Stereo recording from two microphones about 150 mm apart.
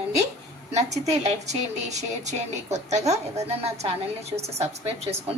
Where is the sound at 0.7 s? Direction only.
50° right (ahead or behind).